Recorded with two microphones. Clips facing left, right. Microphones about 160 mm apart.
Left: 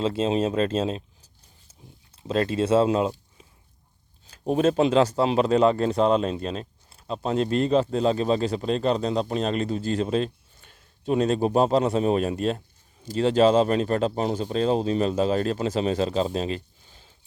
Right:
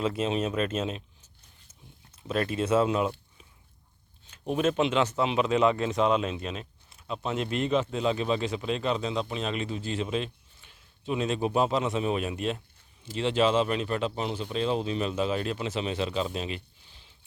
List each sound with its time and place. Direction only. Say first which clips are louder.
0.0 s speech: left 5 dB; 30° left (ahead or behind); by 17.2 s 45° left (ahead or behind)